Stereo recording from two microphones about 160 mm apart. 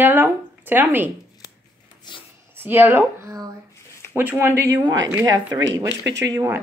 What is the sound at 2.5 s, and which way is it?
Speech, 15° right (ahead or behind).